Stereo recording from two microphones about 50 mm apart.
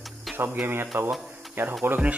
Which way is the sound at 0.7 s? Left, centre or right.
Right.